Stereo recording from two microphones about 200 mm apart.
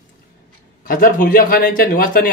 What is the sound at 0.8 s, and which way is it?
Speech, 45° left (ahead or behind).